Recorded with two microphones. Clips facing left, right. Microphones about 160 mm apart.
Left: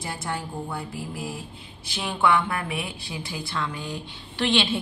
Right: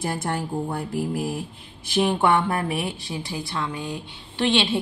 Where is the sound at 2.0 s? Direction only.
40° right (ahead or behind).